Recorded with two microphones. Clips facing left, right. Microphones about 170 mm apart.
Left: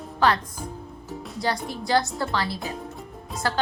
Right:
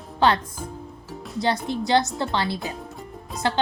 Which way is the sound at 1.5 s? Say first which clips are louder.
Right 5 dB; centre (ahead or behind).